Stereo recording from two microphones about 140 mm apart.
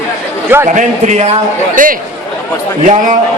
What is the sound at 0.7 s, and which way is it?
Speech, 60° right (ahead or behind).